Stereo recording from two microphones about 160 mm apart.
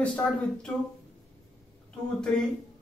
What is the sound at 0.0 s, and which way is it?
Speech, 5° left (ahead or behind).